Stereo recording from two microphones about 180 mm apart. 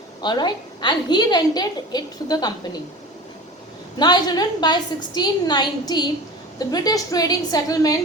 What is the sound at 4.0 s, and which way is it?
A woman's voice, 20° left (ahead or behind).